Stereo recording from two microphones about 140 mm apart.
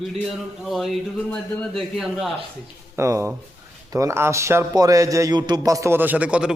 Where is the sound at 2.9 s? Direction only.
20° right (ahead or behind).